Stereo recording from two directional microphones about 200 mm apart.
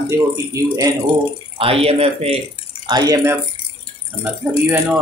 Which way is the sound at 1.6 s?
30° right (ahead or behind).